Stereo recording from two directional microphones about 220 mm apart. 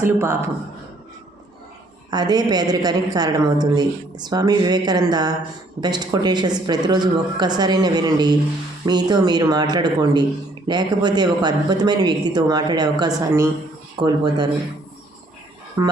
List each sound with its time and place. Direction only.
0.0 s speech: 10° right (ahead or behind)
2.0 s a woman's voice: 20° right (ahead or behind)
15.8 s speech: 15° right (ahead or behind)